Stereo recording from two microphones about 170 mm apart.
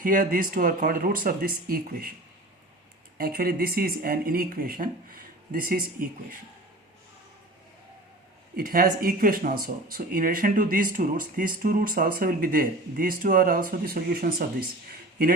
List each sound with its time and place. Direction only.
0.0 s speech: 55° right (ahead or behind)
3.2 s speech: 60° right (ahead or behind)
8.5 s speech: 60° right (ahead or behind)